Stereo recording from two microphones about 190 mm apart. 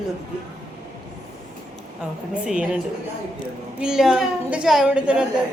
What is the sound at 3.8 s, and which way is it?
A woman's voice, 5° right (ahead or behind).